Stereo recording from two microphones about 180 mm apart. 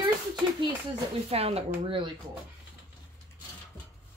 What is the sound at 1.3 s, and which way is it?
Speech, 35° right (ahead or behind).